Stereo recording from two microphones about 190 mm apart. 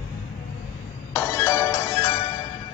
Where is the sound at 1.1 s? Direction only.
15° left (ahead or behind).